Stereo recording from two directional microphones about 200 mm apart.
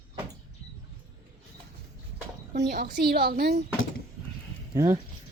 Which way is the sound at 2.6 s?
50° right (ahead or behind).